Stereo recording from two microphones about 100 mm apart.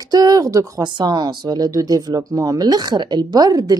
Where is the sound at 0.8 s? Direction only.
50° right (ahead or behind).